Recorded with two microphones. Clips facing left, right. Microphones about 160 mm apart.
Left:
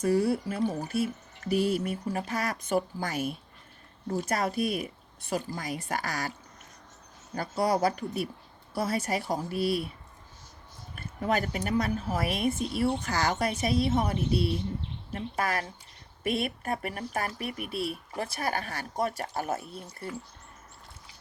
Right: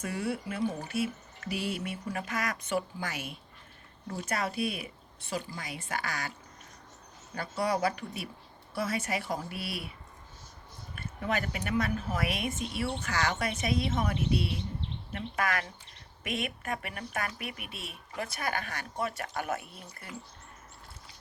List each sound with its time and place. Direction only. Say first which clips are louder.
0.0 s speech: left 8 dB; 35° left (ahead or behind)
7.3 s speech: left 4 dB; 40° left (ahead or behind)
11.2 s speech: left 4 dB; 40° left (ahead or behind)